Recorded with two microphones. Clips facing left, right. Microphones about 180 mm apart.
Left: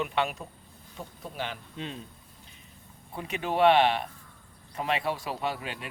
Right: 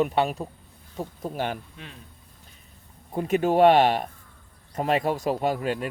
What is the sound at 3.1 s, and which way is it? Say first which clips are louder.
Speech: right 8 dB; 45° right (ahead or behind).